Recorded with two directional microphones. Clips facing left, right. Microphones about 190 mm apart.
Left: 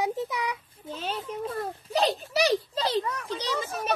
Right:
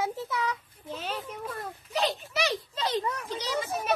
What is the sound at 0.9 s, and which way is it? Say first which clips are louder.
A child's voice: left 3 dB; 30° left (ahead or behind).